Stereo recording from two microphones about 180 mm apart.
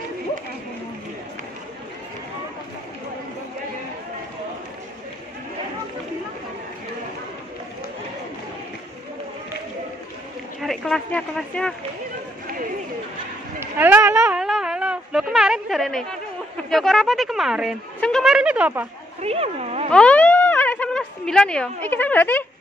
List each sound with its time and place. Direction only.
10.6 s speech: 5° left (ahead or behind)
13.6 s a sound: 10° right (ahead or behind)
16.7 s speech: centre (ahead or behind)
19.2 s speech: 35° right (ahead or behind)
19.9 s speech: 5° left (ahead or behind)